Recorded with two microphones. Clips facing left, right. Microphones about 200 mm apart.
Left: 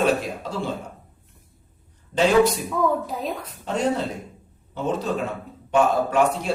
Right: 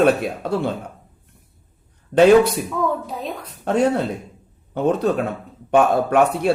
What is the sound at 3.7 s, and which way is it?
A man's voice, 60° right (ahead or behind).